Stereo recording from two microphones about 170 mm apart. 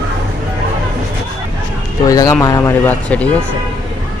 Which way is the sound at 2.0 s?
20° left (ahead or behind).